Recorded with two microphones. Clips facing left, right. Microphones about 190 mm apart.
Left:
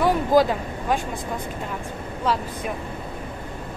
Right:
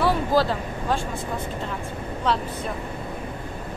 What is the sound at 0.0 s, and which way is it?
Speech, 15° left (ahead or behind).